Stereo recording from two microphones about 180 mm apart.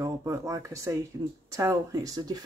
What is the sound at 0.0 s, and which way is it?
Speech, 15° right (ahead or behind).